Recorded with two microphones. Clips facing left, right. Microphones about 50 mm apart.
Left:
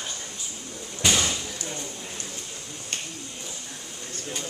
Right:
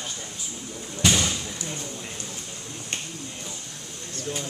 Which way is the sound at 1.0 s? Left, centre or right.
Centre.